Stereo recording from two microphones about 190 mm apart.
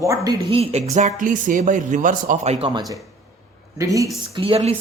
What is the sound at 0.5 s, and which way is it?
Speech, 35° right (ahead or behind).